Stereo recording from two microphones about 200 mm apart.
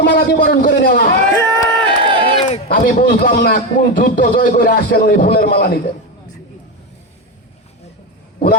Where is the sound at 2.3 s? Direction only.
30° left (ahead or behind).